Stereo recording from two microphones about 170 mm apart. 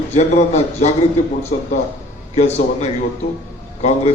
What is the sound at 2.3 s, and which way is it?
A man's voice, 40° left (ahead or behind).